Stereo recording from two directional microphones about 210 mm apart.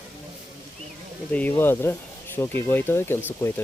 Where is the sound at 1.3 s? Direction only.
10° left (ahead or behind).